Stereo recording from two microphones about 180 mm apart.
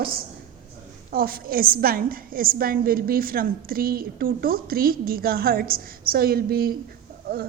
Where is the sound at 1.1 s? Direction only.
55° right (ahead or behind).